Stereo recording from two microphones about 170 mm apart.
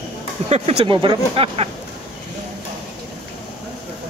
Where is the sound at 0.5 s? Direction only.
35° right (ahead or behind).